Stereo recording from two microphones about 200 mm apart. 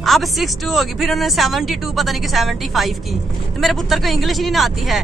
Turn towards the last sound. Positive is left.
turn(degrees=0)  # may be behind; listen again after turning